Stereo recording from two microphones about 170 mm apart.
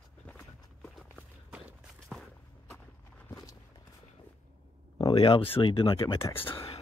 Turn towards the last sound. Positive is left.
turn(degrees=30)  # may be behind; listen again after turning